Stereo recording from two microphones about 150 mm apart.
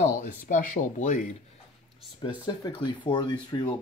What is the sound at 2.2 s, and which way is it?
Speech, 30° left (ahead or behind).